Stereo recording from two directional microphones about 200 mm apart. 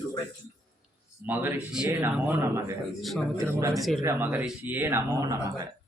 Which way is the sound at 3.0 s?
5° left (ahead or behind).